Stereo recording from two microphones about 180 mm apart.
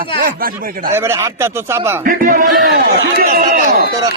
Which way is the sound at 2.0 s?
50° right (ahead or behind).